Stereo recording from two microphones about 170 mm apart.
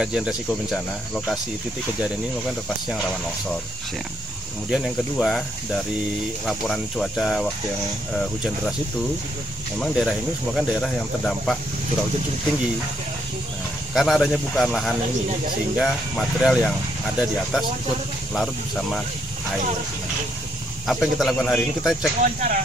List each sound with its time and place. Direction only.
0.0 s speech: 5° right (ahead or behind)
4.6 s speech: 5° right (ahead or behind)
6.4 s speech: centre (ahead or behind)
9.8 s speech: centre (ahead or behind)
13.9 s speech: centre (ahead or behind)
20.8 s speech: centre (ahead or behind)
22.2 s speech: 50° right (ahead or behind)